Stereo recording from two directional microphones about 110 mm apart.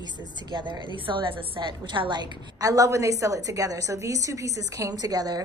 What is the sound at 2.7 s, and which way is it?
A woman's voice, 30° right (ahead or behind).